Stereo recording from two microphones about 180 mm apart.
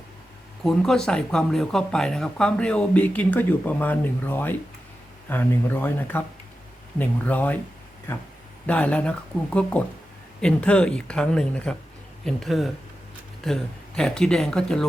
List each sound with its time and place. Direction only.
0.6 s speech: 5° left (ahead or behind)